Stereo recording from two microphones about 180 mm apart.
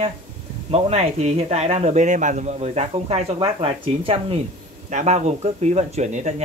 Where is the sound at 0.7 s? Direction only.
35° right (ahead or behind).